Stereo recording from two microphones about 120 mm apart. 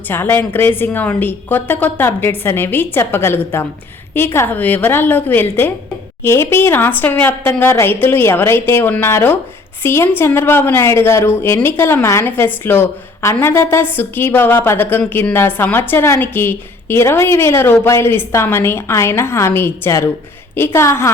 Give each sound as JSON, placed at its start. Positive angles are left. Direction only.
{"t": 0.1, "sound": "a woman's voice", "side_deg": 15}